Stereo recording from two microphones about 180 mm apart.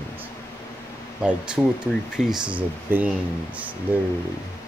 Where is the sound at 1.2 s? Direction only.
5° right (ahead or behind).